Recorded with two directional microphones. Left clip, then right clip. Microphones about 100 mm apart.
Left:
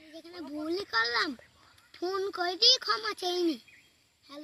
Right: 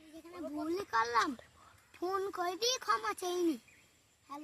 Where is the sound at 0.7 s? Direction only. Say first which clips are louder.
Left 4 dB; 35° right (ahead or behind).